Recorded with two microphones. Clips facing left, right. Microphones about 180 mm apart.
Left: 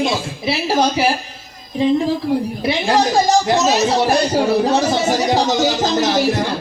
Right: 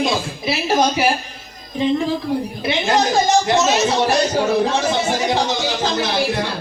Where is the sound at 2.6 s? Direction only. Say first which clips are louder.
Even; 35° left (ahead or behind).